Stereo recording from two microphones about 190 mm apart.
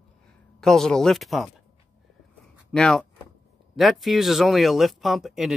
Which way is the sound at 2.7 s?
5° left (ahead or behind).